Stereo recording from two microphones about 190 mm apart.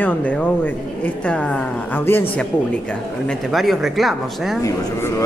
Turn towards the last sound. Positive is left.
turn(degrees=15)  # may be behind; listen again after turning